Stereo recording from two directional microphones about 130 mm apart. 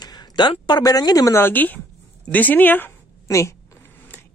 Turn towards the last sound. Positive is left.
turn(degrees=20)  # may be behind; listen again after turning